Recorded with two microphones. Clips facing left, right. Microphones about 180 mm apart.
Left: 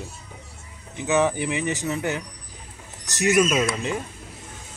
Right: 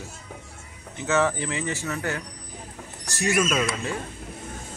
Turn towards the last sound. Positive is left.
turn(degrees=20)  # may be behind; listen again after turning